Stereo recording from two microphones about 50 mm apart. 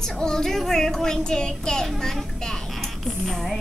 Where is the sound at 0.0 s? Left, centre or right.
Centre.